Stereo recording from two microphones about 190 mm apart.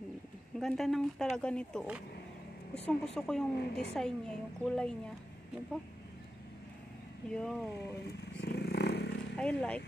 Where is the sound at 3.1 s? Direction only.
5° left (ahead or behind).